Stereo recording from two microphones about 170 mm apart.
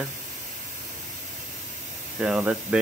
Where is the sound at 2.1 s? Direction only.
5° right (ahead or behind).